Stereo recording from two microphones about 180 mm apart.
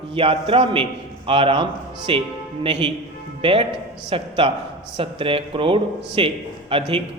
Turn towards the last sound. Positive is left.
turn(degrees=-30)  # may be behind; listen again after turning